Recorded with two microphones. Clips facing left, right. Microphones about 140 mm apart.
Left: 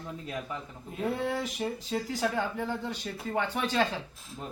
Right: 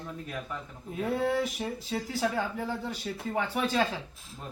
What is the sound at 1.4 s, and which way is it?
Speech, 5° right (ahead or behind).